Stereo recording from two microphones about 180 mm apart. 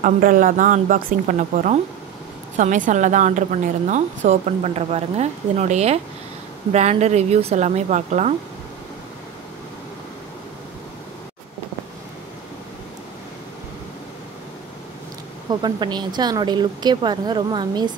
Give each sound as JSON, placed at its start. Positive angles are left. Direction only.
{"t": 0.0, "sound": "a woman's voice", "side_deg": -45}
{"t": 15.6, "sound": "a woman's voice", "side_deg": -25}